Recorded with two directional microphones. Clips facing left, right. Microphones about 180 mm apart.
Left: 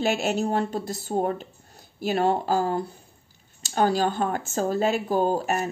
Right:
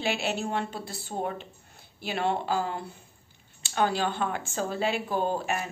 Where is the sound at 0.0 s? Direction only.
45° left (ahead or behind).